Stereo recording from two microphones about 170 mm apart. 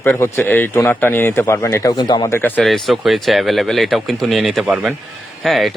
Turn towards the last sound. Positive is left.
turn(degrees=0)  # may be behind; listen again after turning